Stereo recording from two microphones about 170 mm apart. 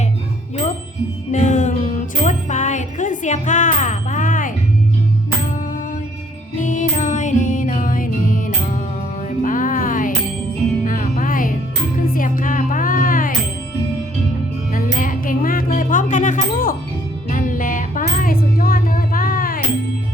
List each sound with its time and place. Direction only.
0.5 s music: 40° left (ahead or behind)
6.6 s music: 50° left (ahead or behind)
14.7 s music: 55° left (ahead or behind)